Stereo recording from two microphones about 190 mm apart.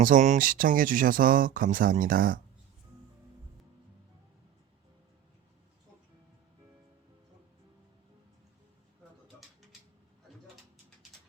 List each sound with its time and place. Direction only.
0.0 s speech: 45° right (ahead or behind)